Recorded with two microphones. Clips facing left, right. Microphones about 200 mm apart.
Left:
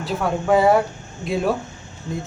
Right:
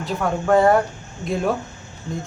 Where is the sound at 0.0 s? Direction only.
5° left (ahead or behind).